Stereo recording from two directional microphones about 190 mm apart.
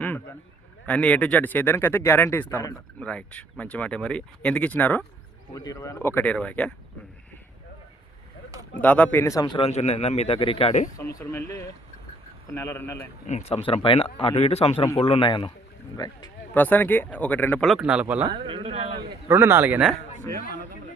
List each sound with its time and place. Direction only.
0.0 s a sound: 10° left (ahead or behind)
0.9 s speech: 5° left (ahead or behind)
8.8 s a man's voice: 10° left (ahead or behind); by 10.8 s 35° left (ahead or behind)
10.9 s speech: 15° left (ahead or behind)
13.2 s speech: 35° left (ahead or behind)
16.6 s speech: 10° left (ahead or behind); by 18.3 s 5° right (ahead or behind)
18.3 s speech: 25° right (ahead or behind)
19.3 s speech: 15° right (ahead or behind)